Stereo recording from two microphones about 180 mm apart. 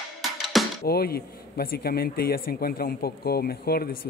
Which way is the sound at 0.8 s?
60° left (ahead or behind).